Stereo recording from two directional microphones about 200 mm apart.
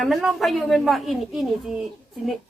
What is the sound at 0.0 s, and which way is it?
A woman's voice, centre (ahead or behind).